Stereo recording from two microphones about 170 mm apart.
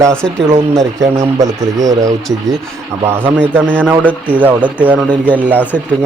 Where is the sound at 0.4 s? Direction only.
15° right (ahead or behind).